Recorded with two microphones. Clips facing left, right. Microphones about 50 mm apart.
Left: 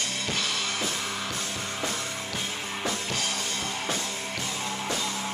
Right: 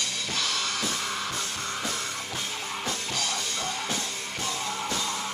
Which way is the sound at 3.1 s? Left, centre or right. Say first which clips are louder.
Even; left.